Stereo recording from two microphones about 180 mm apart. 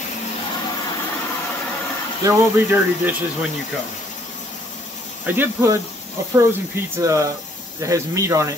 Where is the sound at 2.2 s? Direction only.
10° right (ahead or behind).